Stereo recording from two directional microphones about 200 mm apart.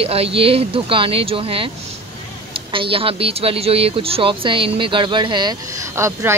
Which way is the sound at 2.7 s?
25° right (ahead or behind).